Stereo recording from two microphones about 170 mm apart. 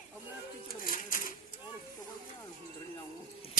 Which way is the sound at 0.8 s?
55° left (ahead or behind).